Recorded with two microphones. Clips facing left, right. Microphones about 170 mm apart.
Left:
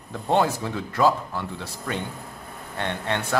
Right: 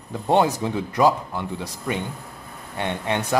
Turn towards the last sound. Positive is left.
turn(degrees=-15)  # may be behind; listen again after turning